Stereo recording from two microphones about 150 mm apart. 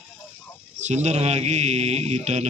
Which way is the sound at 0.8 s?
50° right (ahead or behind).